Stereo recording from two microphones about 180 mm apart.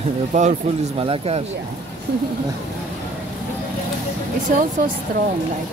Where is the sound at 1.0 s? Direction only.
30° right (ahead or behind).